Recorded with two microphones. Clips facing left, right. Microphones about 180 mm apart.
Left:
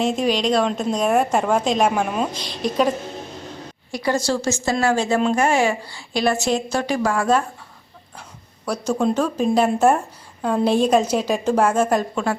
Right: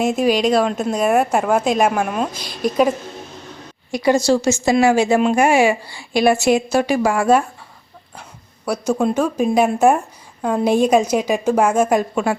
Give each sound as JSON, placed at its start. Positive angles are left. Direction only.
{"t": 0.0, "sound": "a woman's voice", "side_deg": -10}
{"t": 3.9, "sound": "a woman's voice", "side_deg": -15}
{"t": 8.6, "sound": "a woman's voice", "side_deg": -10}